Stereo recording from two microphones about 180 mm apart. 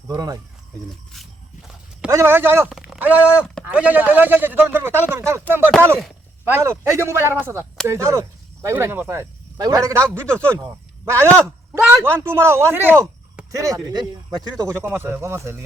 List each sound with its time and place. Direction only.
0.1 s speech: 20° right (ahead or behind)
1.1 s walk: centre (ahead or behind)
2.0 s speech: 15° right (ahead or behind)